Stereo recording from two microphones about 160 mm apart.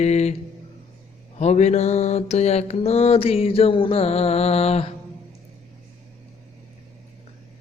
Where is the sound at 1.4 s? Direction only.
45° left (ahead or behind).